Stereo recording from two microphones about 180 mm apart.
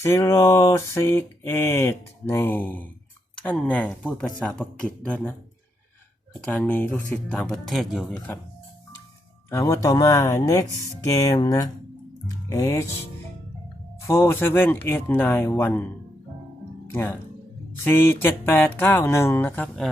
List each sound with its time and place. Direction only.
0.0 s speech: 15° left (ahead or behind)
6.4 s speech: 10° left (ahead or behind)
9.5 s speech: 15° left (ahead or behind)
14.1 s speech: 15° left (ahead or behind)